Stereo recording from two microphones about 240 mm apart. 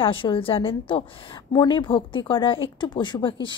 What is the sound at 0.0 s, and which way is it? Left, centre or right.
Speech, left.